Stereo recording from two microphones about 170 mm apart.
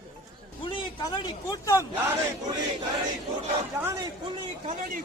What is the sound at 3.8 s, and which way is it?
Speech, 15° right (ahead or behind).